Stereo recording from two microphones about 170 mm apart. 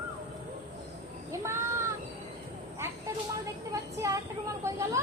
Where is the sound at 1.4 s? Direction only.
15° right (ahead or behind).